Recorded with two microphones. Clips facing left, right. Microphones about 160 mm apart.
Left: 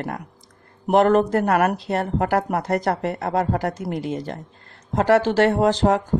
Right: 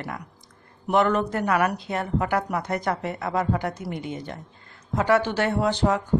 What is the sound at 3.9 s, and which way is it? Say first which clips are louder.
Speech: left 6 dB; 90° left.